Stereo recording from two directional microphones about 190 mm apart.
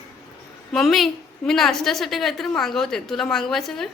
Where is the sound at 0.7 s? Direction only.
Centre (ahead or behind).